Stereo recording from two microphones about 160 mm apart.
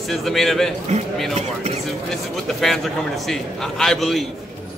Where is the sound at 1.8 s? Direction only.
Centre (ahead or behind).